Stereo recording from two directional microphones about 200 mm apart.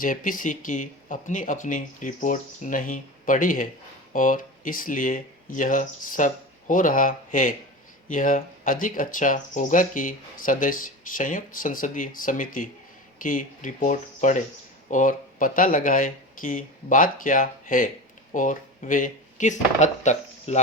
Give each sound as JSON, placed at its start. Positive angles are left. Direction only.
{"t": 0.0, "sound": "speech", "side_deg": 45}